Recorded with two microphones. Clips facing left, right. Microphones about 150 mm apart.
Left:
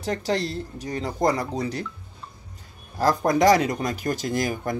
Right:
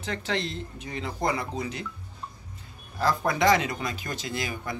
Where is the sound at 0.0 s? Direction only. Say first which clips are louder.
Left 5 dB; 40° left (ahead or behind).